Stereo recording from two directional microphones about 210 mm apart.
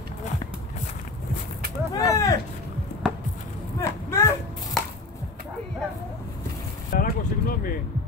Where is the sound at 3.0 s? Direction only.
5° right (ahead or behind).